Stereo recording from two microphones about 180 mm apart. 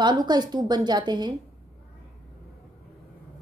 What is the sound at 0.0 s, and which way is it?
A woman's voice, 25° right (ahead or behind).